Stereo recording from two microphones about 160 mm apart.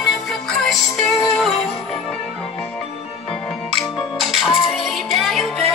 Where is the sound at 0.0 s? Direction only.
5° left (ahead or behind).